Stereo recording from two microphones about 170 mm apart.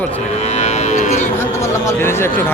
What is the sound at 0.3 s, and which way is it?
Livestock, 40° left (ahead or behind).